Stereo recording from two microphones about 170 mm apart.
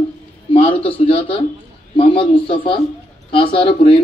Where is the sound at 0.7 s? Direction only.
30° left (ahead or behind).